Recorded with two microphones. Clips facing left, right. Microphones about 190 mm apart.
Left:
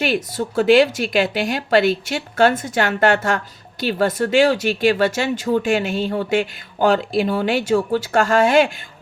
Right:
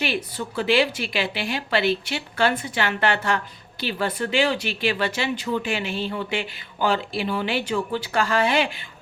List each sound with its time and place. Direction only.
0.0 s speech: 45° left (ahead or behind)